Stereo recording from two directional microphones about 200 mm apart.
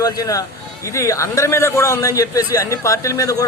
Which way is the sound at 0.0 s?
20° left (ahead or behind).